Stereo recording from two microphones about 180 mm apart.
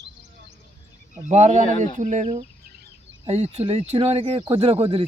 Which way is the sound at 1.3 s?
40° right (ahead or behind).